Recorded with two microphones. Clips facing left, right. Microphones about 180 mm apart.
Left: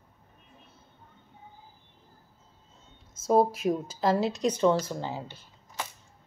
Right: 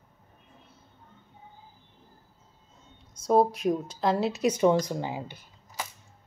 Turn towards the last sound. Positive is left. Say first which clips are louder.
# even
turn(degrees=-15)  # may be behind; listen again after turning